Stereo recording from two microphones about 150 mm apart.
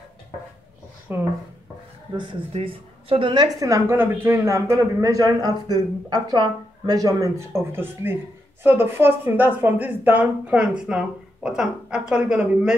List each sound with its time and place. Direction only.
1.1 s a woman's voice: 15° right (ahead or behind)
2.1 s a woman's voice: 35° right (ahead or behind); by 12.7 s 5° right (ahead or behind)